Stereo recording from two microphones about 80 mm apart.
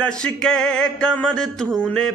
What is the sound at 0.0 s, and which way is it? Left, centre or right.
Mantra, centre.